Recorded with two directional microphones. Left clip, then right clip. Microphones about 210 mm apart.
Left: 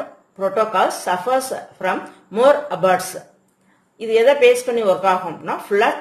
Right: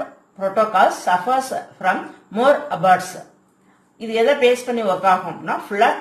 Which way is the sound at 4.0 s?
55° left (ahead or behind).